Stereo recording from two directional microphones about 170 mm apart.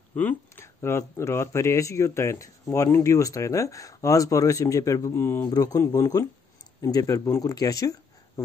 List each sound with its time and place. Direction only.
0.1 s speech: 10° left (ahead or behind)